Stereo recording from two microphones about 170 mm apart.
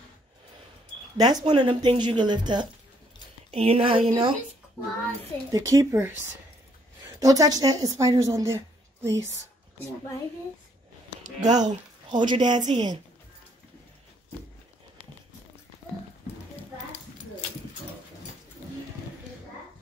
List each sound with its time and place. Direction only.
1.1 s speech: 25° right (ahead or behind)
5.5 s speech: 20° right (ahead or behind)
7.2 s a woman's voice: 20° right (ahead or behind)
11.5 s speech: 25° right (ahead or behind)